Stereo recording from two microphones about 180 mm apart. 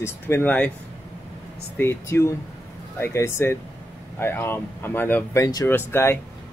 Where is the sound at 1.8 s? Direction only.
15° left (ahead or behind).